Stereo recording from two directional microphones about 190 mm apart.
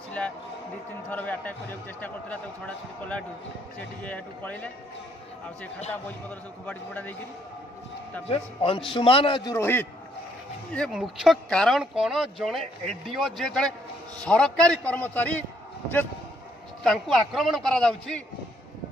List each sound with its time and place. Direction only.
1.1 s a man's voice: 10° left (ahead or behind)
6.6 s a man's voice: 10° left (ahead or behind)
8.3 s a man's voice: 30° left (ahead or behind); by 9.8 s 10° left (ahead or behind)
10.7 s a man's voice: centre (ahead or behind)
16.8 s speech: centre (ahead or behind)